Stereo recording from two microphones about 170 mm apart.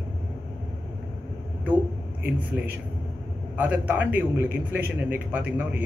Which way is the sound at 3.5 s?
10° right (ahead or behind).